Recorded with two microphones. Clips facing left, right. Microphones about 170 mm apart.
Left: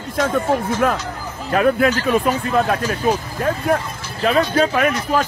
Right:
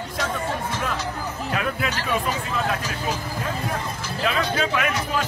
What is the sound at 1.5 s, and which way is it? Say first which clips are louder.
Speech: left 12 dB; 45° left (ahead or behind).